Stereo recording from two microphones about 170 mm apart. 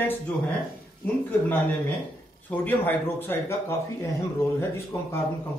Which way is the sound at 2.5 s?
10° left (ahead or behind).